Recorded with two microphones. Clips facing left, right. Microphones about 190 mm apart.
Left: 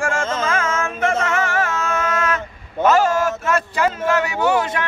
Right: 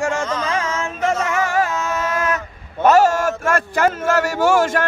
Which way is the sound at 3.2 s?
50° right (ahead or behind).